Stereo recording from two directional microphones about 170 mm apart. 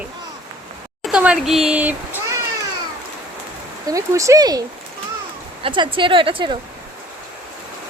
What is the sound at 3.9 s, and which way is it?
Speech, 20° right (ahead or behind).